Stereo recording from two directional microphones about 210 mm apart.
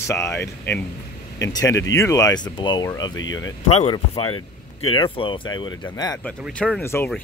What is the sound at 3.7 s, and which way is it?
Speech, 30° left (ahead or behind).